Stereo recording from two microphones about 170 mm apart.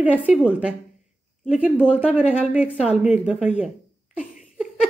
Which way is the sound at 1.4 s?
5° right (ahead or behind).